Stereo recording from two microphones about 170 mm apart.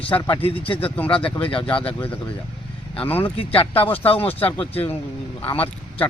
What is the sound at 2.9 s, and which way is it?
Speech, 10° left (ahead or behind).